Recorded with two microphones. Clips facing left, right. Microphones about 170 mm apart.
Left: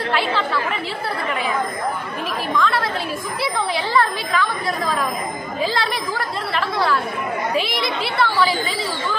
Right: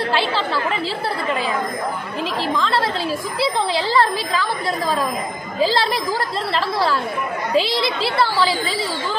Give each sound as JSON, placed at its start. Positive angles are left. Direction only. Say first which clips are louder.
{"t": 0.1, "sound": "chatter", "louder": "right 1 dB", "side_deg": -30}
{"t": 2.5, "sound": "a sound", "louder": "left 2 dB", "side_deg": -30}
{"t": 5.6, "sound": "speech", "louder": "right 4 dB", "side_deg": -35}